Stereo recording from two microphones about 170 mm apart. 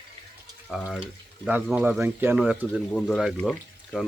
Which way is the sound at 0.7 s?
Centre (ahead or behind).